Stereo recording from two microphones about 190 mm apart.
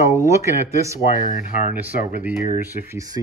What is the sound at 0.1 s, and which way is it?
Speech, 15° right (ahead or behind).